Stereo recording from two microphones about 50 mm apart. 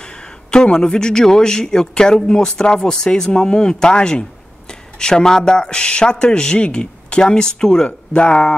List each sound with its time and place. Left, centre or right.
0.0 s speech: centre